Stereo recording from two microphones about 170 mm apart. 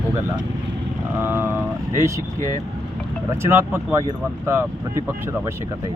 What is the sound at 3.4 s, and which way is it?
Speech, 15° right (ahead or behind).